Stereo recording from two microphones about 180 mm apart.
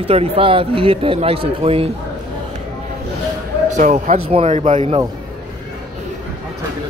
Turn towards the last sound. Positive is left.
turn(degrees=-40)  # may be behind; listen again after turning